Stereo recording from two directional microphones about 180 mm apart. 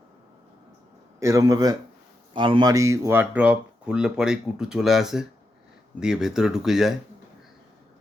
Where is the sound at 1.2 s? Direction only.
20° right (ahead or behind); by 6.9 s centre (ahead or behind).